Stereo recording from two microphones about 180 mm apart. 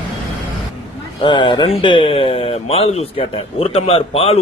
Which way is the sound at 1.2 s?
25° left (ahead or behind).